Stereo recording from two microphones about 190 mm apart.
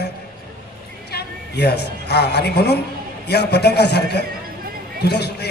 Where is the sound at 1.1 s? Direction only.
60° left (ahead or behind).